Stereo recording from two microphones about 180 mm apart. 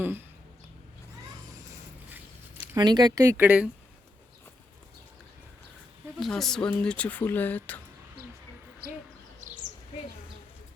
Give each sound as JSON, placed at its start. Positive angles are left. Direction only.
{"t": 0.0, "sound": "a sound", "side_deg": -10}
{"t": 2.7, "sound": "speech", "side_deg": -25}
{"t": 6.1, "sound": "speech", "side_deg": 0}